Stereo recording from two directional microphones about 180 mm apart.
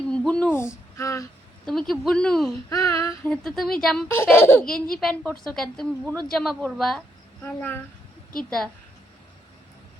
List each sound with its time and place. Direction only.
0.1 s a sound: 5° left (ahead or behind)
1.6 s a woman's voice: centre (ahead or behind)
2.6 s child singing: 20° left (ahead or behind)
3.2 s a woman's voice: centre (ahead or behind)
4.1 s a child's voice: 15° left (ahead or behind)
4.7 s a woman's voice: centre (ahead or behind)